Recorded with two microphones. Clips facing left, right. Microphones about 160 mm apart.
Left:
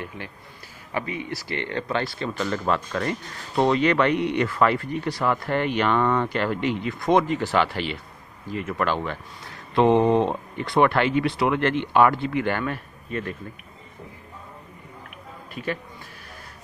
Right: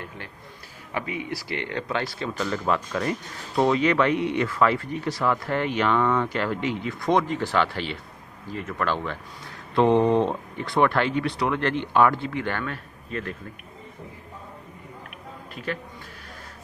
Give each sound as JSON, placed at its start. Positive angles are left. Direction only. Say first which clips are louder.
{"t": 0.9, "sound": "speech", "louder": "left 1 dB", "side_deg": -10}
{"t": 11.1, "sound": "speech", "louder": "left 3 dB", "side_deg": 90}
{"t": 11.3, "sound": "speech", "louder": "left 3 dB", "side_deg": 10}
{"t": 15.5, "sound": "a man's voice", "louder": "left 2 dB", "side_deg": 5}